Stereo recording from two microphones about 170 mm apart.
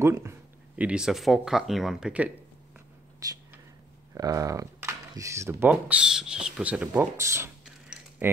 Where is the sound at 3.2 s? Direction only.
20° right (ahead or behind).